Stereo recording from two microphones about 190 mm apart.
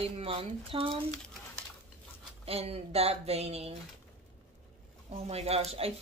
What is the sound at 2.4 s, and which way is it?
Speech, 30° right (ahead or behind).